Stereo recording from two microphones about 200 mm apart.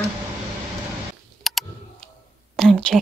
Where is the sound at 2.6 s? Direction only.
5° left (ahead or behind).